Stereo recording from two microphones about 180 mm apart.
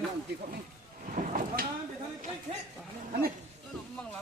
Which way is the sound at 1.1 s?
45° right (ahead or behind).